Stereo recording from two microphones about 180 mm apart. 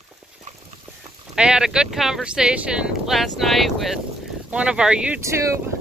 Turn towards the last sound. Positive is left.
turn(degrees=-15)  # may be behind; listen again after turning